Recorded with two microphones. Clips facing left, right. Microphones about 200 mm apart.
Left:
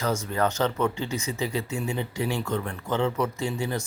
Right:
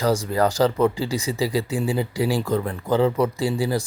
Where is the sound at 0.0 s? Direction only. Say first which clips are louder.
Right 5 dB; 35° right (ahead or behind).